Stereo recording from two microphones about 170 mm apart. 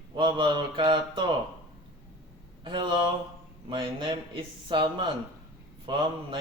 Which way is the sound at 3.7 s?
30° right (ahead or behind).